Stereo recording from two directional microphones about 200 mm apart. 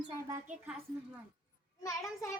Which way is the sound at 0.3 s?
10° right (ahead or behind).